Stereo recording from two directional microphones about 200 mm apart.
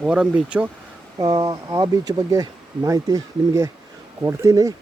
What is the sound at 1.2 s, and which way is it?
Speech, 20° right (ahead or behind).